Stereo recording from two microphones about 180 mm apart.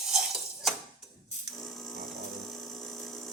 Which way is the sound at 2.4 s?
Centre (ahead or behind).